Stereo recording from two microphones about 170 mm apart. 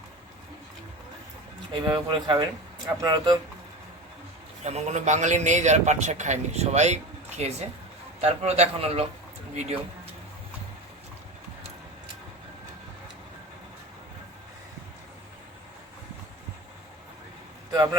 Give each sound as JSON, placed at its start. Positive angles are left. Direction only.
{"t": 1.9, "sound": "speech", "side_deg": -25}
{"t": 4.6, "sound": "a man's voice", "side_deg": -40}